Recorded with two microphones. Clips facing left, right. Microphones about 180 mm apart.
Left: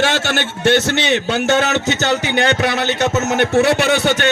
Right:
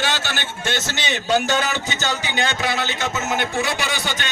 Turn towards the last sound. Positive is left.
turn(degrees=60)  # may be behind; listen again after turning